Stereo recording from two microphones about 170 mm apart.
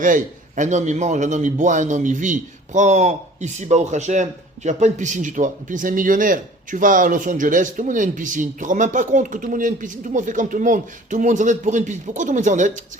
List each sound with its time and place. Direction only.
0.0 s a man's voice: 50° right (ahead or behind)